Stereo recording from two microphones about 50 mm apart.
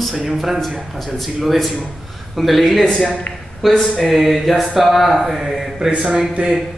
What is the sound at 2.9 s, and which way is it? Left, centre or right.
Speech, centre.